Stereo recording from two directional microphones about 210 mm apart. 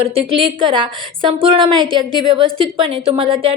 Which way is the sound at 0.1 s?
25° right (ahead or behind).